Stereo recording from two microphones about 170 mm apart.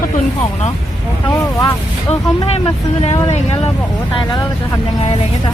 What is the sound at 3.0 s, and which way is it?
Speech, 35° left (ahead or behind).